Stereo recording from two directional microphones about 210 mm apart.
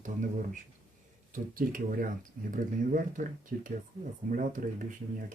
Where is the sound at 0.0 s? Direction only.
35° right (ahead or behind).